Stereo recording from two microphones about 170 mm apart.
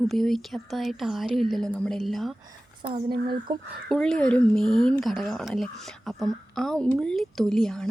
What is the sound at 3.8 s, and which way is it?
Speech, 5° left (ahead or behind).